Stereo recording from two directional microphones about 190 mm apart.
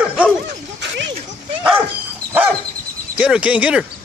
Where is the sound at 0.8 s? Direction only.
70° right (ahead or behind).